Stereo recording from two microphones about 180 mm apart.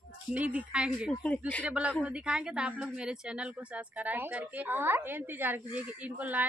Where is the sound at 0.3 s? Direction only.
10° right (ahead or behind).